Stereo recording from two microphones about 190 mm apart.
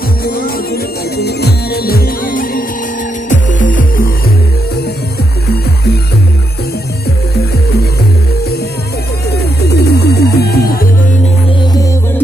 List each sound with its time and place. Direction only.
0.2 s music: 50° left (ahead or behind)
9.7 s music: 60° left (ahead or behind)